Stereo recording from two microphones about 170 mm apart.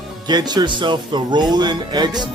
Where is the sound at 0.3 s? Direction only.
25° right (ahead or behind).